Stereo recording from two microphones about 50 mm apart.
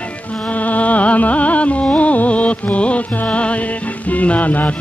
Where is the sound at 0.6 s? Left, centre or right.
Left.